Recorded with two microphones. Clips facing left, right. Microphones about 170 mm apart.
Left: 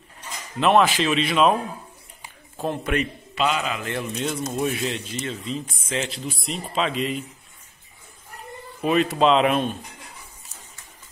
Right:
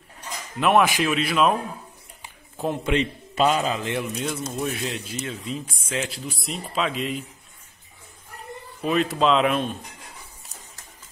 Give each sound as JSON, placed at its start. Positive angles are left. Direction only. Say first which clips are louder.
{"t": 0.6, "sound": "speech", "louder": "left 1 dB", "side_deg": -10}
{"t": 2.6, "sound": "a man's voice", "louder": "right 1 dB", "side_deg": -20}
{"t": 3.3, "sound": "a man's voice", "louder": "right 3 dB", "side_deg": -45}
{"t": 3.8, "sound": "speech", "louder": "even", "side_deg": -10}
{"t": 8.8, "sound": "speech", "louder": "left 2 dB", "side_deg": 0}